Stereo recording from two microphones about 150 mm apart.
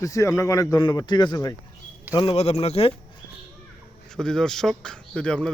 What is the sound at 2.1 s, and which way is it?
Speech, 35° left (ahead or behind).